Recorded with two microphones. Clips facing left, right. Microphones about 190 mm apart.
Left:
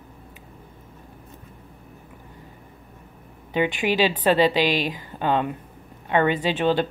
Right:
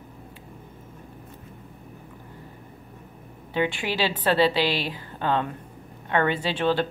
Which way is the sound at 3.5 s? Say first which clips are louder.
Left 4 dB; 15° left (ahead or behind).